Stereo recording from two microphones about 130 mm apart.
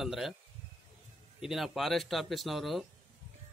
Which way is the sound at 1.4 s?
5° right (ahead or behind).